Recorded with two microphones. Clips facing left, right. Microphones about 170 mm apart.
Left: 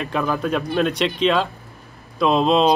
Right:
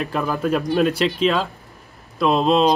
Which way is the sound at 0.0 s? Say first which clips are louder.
Even; centre (ahead or behind).